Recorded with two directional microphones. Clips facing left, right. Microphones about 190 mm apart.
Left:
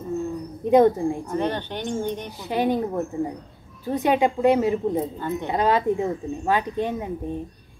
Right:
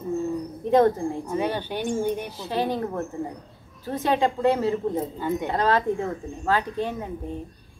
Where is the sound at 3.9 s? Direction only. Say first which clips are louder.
Left 3 dB; 15° left (ahead or behind).